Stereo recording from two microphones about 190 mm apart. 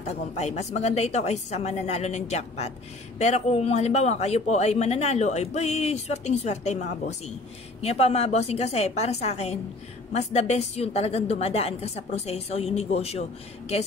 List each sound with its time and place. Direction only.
0.0 s a man's voice: 35° left (ahead or behind)